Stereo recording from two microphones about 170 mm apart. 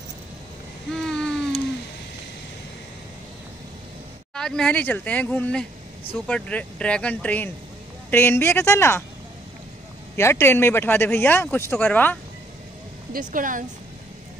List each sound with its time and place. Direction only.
0.9 s a sound: 5° left (ahead or behind)
4.4 s speech: 5° left (ahead or behind)
10.1 s speech: 15° left (ahead or behind)
13.1 s speech: 50° right (ahead or behind)